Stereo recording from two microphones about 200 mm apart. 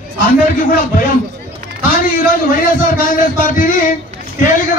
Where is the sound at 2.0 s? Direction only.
45° left (ahead or behind).